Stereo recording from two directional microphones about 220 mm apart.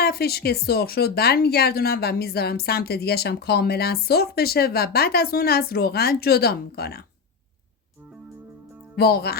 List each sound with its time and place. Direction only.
0.0 s speech: 45° left (ahead or behind)
9.0 s speech: 45° left (ahead or behind)